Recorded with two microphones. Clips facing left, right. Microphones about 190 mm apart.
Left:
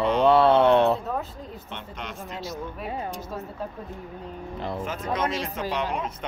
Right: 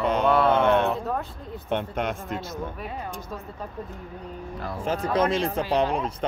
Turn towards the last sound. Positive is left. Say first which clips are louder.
# right 5 dB
turn(degrees=-35)  # may be behind; listen again after turning